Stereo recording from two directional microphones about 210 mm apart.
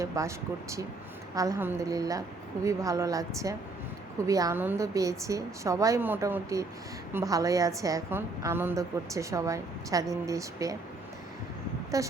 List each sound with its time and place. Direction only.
0.0 s a woman's voice: 15° right (ahead or behind)
11.9 s a woman's voice: 15° right (ahead or behind)